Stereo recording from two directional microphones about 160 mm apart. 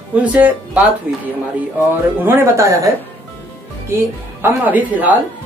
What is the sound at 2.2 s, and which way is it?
Speech, 15° right (ahead or behind).